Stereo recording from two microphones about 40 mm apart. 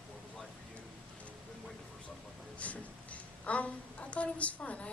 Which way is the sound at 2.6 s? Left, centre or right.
Left.